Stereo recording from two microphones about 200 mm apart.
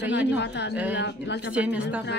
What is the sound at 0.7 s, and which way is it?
Speech, 5° right (ahead or behind).